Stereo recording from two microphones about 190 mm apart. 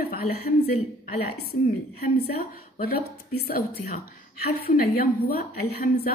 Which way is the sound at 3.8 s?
40° left (ahead or behind).